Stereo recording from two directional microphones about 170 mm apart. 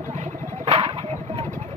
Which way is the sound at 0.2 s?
35° right (ahead or behind).